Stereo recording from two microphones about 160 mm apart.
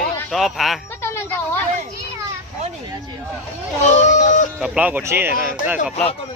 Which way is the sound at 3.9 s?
45° left (ahead or behind).